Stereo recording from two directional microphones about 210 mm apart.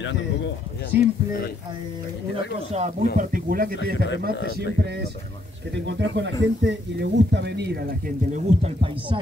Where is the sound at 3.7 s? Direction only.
60° left (ahead or behind).